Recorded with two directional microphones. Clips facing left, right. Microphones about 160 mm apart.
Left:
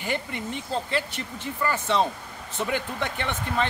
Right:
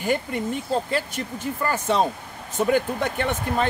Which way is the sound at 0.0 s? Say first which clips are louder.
Right 6 dB; 45° right (ahead or behind).